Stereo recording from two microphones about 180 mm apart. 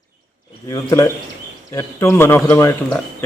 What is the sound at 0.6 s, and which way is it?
Speech, 15° left (ahead or behind).